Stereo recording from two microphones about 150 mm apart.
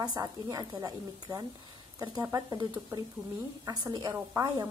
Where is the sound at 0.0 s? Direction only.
25° right (ahead or behind).